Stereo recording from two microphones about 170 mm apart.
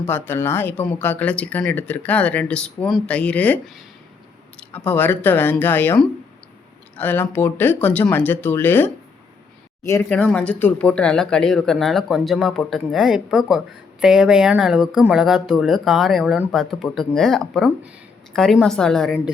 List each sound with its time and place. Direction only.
0.0 s speech: 15° left (ahead or behind)
10.1 s speech: 5° left (ahead or behind)